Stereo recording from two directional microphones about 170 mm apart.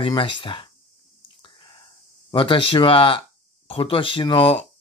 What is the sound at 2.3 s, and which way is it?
Speech, 30° left (ahead or behind).